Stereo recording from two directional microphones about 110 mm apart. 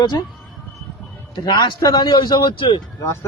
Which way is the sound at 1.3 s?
40° left (ahead or behind).